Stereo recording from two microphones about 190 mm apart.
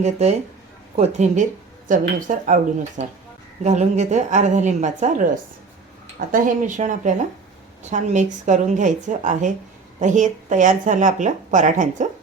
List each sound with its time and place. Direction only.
0.0 s speech: 35° right (ahead or behind)